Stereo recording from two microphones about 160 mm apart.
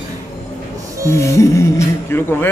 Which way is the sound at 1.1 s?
20° left (ahead or behind).